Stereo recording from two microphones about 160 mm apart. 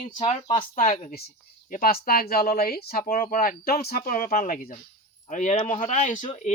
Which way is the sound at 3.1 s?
60° left (ahead or behind).